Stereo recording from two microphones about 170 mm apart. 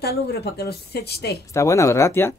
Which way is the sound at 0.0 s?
70° left (ahead or behind).